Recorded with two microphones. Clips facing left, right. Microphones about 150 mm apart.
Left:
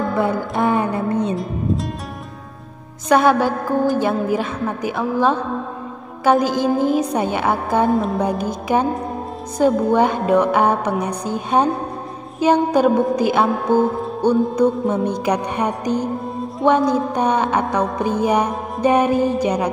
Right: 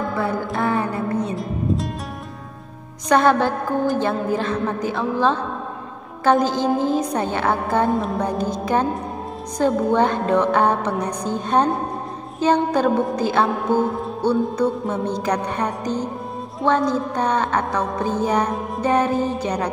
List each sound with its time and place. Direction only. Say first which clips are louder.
0.1 s a woman's voice: left 3 dB; 15° left (ahead or behind)
3.1 s a woman's voice: left 2 dB; 10° left (ahead or behind)
7.9 s music: left 3 dB; centre (ahead or behind)
9.6 s a woman's voice: left 3 dB; 5° left (ahead or behind)
13.8 s music: left 3 dB; centre (ahead or behind)
14.2 s a woman's voice: left 4 dB; 15° left (ahead or behind)